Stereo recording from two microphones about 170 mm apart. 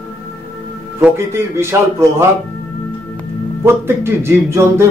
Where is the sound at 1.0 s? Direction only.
15° right (ahead or behind).